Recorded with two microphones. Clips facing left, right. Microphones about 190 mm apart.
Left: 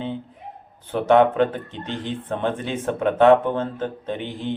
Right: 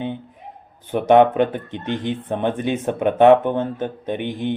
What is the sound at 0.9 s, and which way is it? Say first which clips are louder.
Speech: right 3 dB; 20° right (ahead or behind).